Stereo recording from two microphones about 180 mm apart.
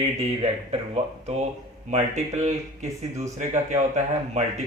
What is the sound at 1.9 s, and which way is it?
A man's voice, 40° right (ahead or behind).